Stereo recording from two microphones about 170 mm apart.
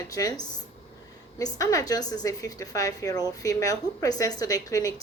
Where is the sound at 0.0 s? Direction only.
20° left (ahead or behind).